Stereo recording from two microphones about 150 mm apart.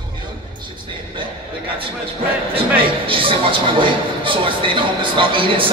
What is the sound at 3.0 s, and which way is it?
Speech, 35° right (ahead or behind).